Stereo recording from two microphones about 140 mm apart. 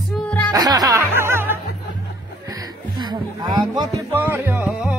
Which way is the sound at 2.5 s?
30° right (ahead or behind).